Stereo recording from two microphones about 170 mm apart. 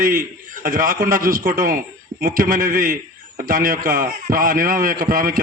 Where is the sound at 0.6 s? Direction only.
55° right (ahead or behind).